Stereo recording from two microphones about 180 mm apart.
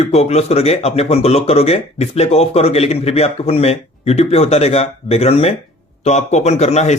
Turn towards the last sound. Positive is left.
turn(degrees=40)  # may be behind; listen again after turning